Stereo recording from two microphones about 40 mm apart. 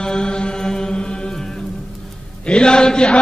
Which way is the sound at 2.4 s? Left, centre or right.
Left.